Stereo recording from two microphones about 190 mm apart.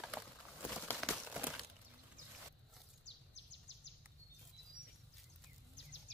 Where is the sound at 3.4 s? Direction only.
65° left (ahead or behind).